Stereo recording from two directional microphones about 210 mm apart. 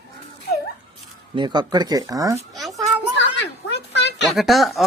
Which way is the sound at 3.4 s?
55° left (ahead or behind).